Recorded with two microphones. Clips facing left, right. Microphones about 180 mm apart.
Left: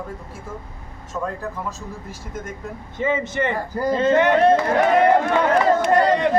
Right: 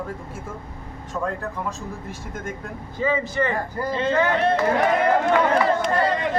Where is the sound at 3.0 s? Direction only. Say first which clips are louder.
Left 1 dB; 20° left (ahead or behind).